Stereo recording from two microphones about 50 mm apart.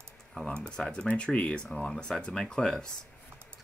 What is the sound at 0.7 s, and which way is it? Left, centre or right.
Speech, centre.